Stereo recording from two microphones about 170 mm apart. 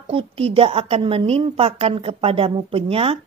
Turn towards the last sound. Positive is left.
turn(degrees=-35)  # may be behind; listen again after turning